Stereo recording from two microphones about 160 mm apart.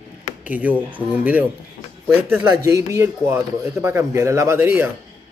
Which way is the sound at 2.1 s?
10° right (ahead or behind).